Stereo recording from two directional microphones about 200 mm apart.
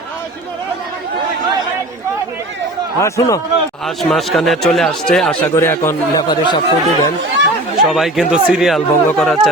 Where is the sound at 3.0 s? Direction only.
15° left (ahead or behind).